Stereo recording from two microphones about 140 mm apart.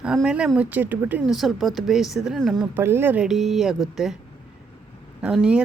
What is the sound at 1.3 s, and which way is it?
Speech, centre (ahead or behind).